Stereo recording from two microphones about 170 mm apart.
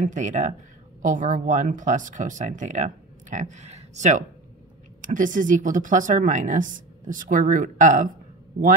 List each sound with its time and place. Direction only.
0.0 s speech: 45° right (ahead or behind)